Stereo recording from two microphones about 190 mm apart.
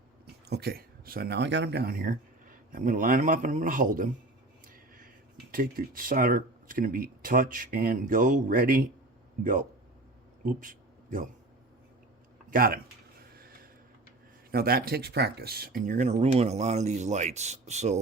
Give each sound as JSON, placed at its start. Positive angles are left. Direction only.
{"t": 0.4, "sound": "speech", "side_deg": -60}
{"t": 5.5, "sound": "speech", "side_deg": -50}
{"t": 10.4, "sound": "a sound", "side_deg": -45}
{"t": 12.5, "sound": "speech", "side_deg": -50}
{"t": 13.3, "sound": "a sound", "side_deg": -50}
{"t": 14.5, "sound": "speech", "side_deg": -50}